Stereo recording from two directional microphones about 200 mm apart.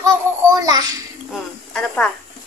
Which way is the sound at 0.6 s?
20° right (ahead or behind).